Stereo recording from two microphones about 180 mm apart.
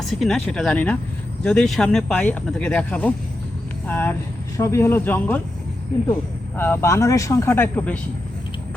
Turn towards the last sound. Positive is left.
turn(degrees=10)  # may be behind; listen again after turning